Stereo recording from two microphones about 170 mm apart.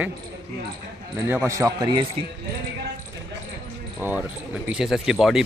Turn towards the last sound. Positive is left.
turn(degrees=0)  # may be behind; listen again after turning